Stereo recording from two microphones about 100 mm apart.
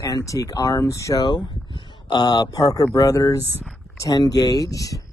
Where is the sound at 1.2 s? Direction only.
50° left (ahead or behind).